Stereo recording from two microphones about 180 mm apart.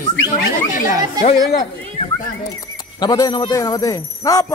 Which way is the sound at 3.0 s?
20° left (ahead or behind).